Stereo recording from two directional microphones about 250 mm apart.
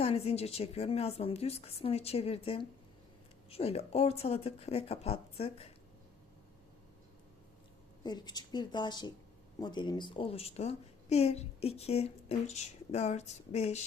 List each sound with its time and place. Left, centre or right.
0.0 s a woman's voice: left
8.0 s a woman's voice: centre